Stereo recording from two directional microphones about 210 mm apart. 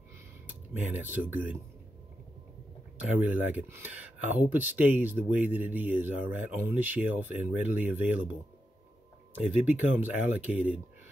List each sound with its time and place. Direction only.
0.7 s speech: 10° right (ahead or behind)
3.1 s speech: 5° right (ahead or behind)
9.5 s speech: 10° right (ahead or behind)